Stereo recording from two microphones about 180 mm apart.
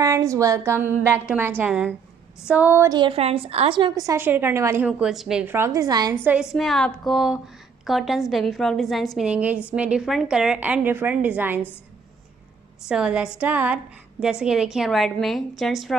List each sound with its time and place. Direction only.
0.0 s a woman's voice: 15° right (ahead or behind)
3.0 s a woman's voice: 30° right (ahead or behind)
6.5 s a woman's voice: centre (ahead or behind)
12.8 s a woman's voice: 5° right (ahead or behind)